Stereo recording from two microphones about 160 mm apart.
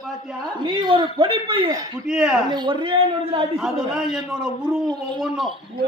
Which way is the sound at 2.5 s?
30° right (ahead or behind).